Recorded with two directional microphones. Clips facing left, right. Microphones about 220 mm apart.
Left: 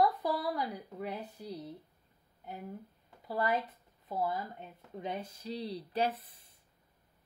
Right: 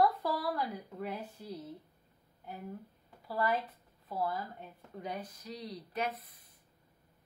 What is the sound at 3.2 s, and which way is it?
Speech, 20° left (ahead or behind).